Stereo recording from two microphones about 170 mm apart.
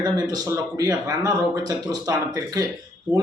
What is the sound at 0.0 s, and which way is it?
Speech, 25° right (ahead or behind).